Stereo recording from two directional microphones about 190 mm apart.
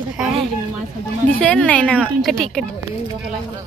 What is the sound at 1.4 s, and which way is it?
Speech, 5° left (ahead or behind).